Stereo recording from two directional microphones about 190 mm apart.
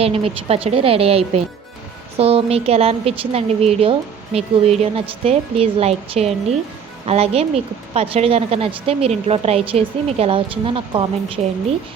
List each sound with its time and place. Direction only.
0.0 s a woman's voice: 30° right (ahead or behind)